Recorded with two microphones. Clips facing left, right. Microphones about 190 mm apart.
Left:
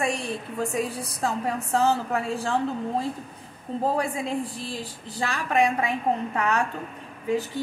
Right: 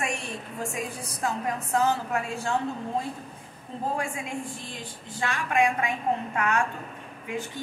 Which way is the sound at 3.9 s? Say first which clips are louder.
Left 5 dB; 35° left (ahead or behind).